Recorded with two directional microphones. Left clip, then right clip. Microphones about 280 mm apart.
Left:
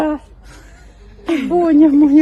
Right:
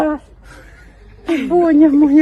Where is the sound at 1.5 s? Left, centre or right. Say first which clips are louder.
Even; centre.